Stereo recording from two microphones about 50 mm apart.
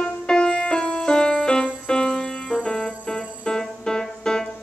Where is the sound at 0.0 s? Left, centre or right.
Centre.